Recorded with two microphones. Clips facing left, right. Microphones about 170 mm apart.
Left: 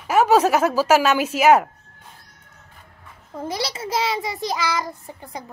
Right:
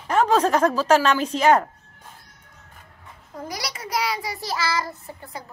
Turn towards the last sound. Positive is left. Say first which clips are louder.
# left 2 dB
turn(degrees=15)  # may be behind; listen again after turning